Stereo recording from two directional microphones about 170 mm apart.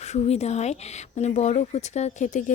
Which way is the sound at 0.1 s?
40° left (ahead or behind).